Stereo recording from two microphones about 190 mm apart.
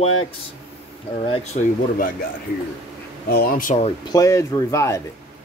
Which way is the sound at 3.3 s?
55° left (ahead or behind).